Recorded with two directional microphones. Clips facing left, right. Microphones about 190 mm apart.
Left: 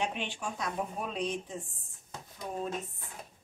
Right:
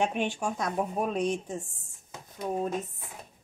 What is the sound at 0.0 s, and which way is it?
Speech, 45° right (ahead or behind).